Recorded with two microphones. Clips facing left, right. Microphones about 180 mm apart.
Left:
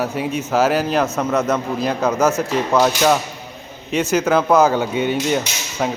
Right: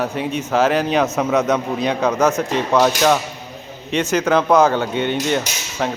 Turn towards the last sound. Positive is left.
turn(degrees=5)  # may be behind; listen again after turning